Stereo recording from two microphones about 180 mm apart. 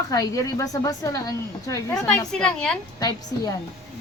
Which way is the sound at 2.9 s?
20° left (ahead or behind).